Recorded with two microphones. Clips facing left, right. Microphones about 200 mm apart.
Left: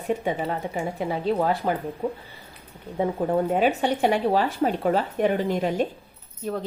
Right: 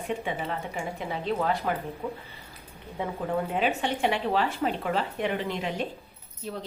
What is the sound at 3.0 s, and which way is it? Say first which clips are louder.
A woman's voice: left 6 dB; 45° left (ahead or behind).